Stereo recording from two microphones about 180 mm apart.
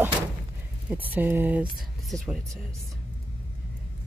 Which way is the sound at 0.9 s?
10° right (ahead or behind).